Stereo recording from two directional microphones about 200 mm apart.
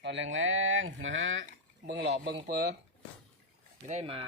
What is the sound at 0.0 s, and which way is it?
Speech, 65° right (ahead or behind).